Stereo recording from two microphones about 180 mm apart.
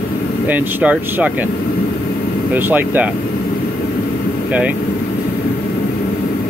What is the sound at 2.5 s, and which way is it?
Speech, 10° right (ahead or behind).